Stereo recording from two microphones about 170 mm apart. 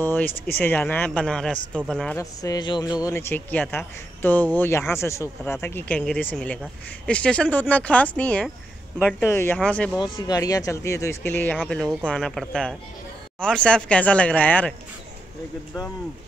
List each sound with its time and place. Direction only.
0.0 s a man's voice: 10° left (ahead or behind)
2.1 s a man's voice: 20° left (ahead or behind); by 9.9 s 5° left (ahead or behind)
10.1 s a man's voice: 20° left (ahead or behind)